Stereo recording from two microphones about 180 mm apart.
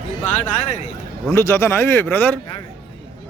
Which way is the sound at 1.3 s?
15° left (ahead or behind).